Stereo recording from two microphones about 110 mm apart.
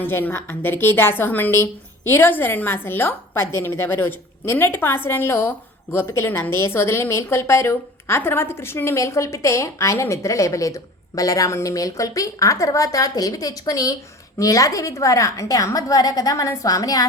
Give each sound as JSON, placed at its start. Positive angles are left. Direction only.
{"t": 0.0, "sound": "a woman's voice", "side_deg": 20}